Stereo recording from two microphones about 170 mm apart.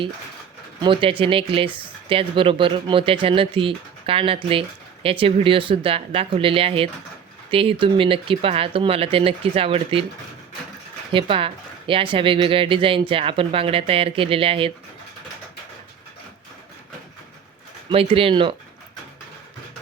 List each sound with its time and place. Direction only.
0.8 s speech: 30° right (ahead or behind)
11.1 s speech: 30° right (ahead or behind)
17.8 s speech: 30° right (ahead or behind)